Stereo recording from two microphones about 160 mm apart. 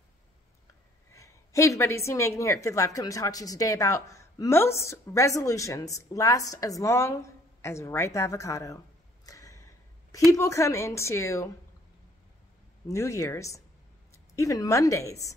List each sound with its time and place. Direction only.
1.1 s a woman's voice: 20° left (ahead or behind)
9.2 s a sound: 20° left (ahead or behind)
10.3 s a woman's voice: 20° left (ahead or behind)
12.8 s a woman's voice: 20° left (ahead or behind)